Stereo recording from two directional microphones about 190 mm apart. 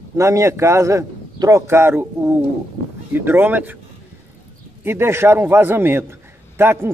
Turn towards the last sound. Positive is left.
turn(degrees=-10)  # may be behind; listen again after turning